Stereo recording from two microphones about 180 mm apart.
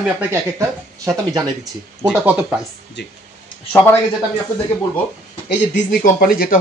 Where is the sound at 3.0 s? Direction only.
75° left (ahead or behind).